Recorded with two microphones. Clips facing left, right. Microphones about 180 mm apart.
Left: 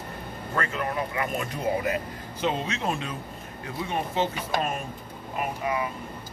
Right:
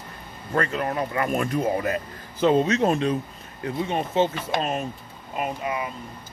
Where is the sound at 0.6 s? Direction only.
40° right (ahead or behind).